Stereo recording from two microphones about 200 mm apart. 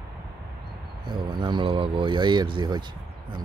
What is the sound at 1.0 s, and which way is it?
Speech, 25° right (ahead or behind).